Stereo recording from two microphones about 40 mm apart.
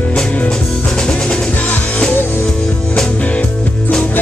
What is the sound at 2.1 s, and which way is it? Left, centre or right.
Music, left.